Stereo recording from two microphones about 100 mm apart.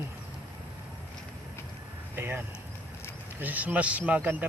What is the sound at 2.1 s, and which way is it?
Speech, 25° right (ahead or behind).